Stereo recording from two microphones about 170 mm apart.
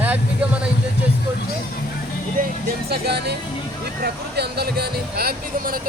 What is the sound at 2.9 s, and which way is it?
Speech, 75° right (ahead or behind).